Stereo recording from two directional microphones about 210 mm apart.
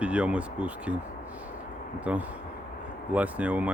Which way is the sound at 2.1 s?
5° right (ahead or behind).